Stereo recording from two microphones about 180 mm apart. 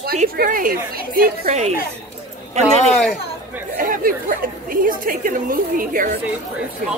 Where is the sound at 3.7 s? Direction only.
50° right (ahead or behind).